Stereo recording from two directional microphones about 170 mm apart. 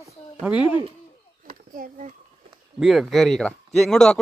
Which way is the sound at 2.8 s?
Centre (ahead or behind).